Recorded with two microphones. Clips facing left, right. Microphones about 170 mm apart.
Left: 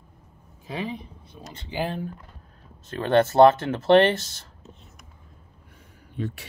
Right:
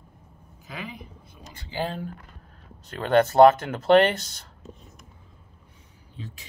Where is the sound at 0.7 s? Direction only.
30° left (ahead or behind).